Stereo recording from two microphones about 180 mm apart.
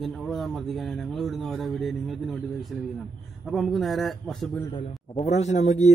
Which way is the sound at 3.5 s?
Centre (ahead or behind).